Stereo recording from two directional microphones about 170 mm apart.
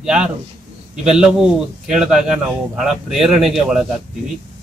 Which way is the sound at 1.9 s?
5° right (ahead or behind).